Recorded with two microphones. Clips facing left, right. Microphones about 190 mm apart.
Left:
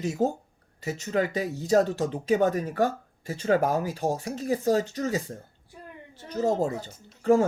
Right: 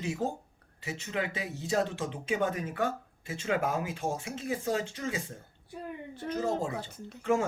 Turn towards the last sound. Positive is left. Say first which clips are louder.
# left 7 dB
turn(degrees=35)  # may be behind; listen again after turning